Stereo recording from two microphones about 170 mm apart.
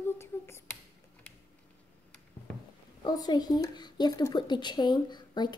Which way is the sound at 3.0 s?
25° left (ahead or behind).